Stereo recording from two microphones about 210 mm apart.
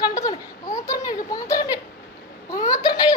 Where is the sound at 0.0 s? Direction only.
15° left (ahead or behind).